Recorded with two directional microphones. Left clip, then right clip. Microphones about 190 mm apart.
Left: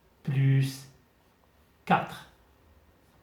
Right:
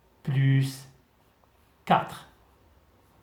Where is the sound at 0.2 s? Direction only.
40° right (ahead or behind).